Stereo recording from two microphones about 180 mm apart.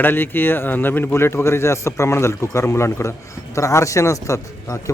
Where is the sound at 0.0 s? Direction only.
10° left (ahead or behind).